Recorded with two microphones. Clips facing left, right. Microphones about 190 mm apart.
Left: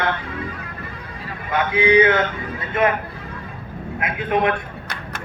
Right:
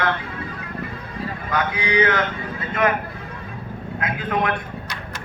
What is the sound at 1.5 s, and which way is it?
A man's voice, 25° left (ahead or behind).